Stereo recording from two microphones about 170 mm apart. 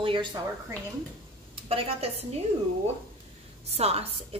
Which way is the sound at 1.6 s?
35° right (ahead or behind).